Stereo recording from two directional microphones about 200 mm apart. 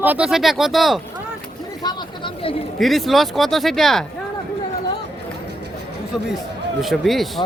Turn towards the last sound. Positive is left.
turn(degrees=0)  # may be behind; listen again after turning